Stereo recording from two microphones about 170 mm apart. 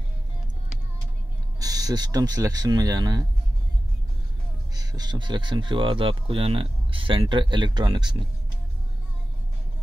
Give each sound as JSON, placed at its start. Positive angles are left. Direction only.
{"t": 1.6, "sound": "speech", "side_deg": -20}
{"t": 4.7, "sound": "speech", "side_deg": -25}